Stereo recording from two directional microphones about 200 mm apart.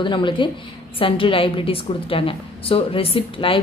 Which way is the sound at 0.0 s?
25° left (ahead or behind).